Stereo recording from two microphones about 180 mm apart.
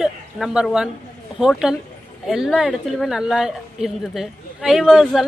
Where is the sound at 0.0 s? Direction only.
5° right (ahead or behind).